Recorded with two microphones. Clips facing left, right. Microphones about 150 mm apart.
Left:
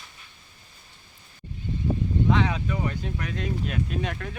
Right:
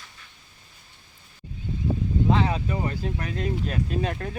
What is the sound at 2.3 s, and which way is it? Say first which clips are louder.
Speech: right 1 dB; 35° right (ahead or behind).